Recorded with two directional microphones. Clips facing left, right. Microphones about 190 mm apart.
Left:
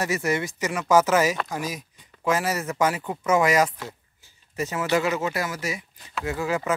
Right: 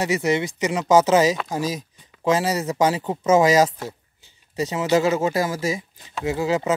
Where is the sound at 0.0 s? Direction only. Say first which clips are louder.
Right 4 dB; 20° right (ahead or behind).